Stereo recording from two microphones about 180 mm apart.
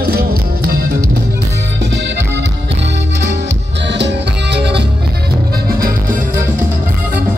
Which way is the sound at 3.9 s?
70° right (ahead or behind).